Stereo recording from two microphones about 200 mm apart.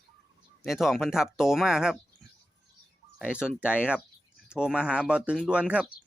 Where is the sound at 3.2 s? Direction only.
5° right (ahead or behind).